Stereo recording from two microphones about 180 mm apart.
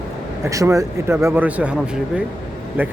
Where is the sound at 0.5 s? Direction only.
15° right (ahead or behind).